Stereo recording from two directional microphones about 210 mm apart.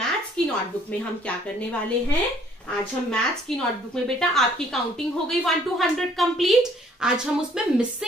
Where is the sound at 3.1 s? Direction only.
5° left (ahead or behind).